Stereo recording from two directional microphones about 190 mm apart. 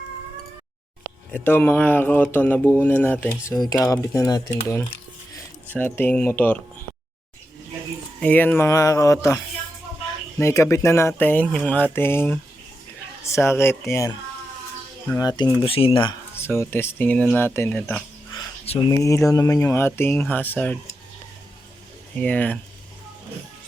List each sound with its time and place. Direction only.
1.3 s speech: 10° left (ahead or behind)
5.7 s speech: 10° left (ahead or behind)
8.2 s speech: 10° left (ahead or behind)
15.2 s speech: 20° left (ahead or behind)
16.3 s speech: 10° left (ahead or behind)
18.3 s a sound: 25° left (ahead or behind)
18.9 s speech: 15° left (ahead or behind)
22.2 s speech: 10° left (ahead or behind)